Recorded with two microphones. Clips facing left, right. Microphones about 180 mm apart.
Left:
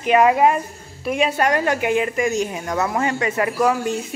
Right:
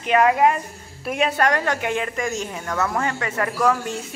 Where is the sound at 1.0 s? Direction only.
Centre (ahead or behind).